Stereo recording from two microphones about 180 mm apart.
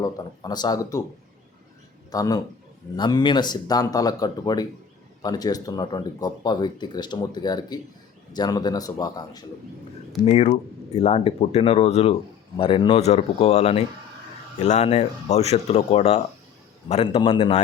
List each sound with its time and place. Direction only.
0.0 s speech: 20° left (ahead or behind)
2.1 s speech: 20° left (ahead or behind)
10.2 s speech: 35° left (ahead or behind)